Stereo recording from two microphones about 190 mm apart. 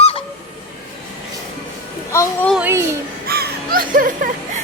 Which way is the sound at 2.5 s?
10° right (ahead or behind).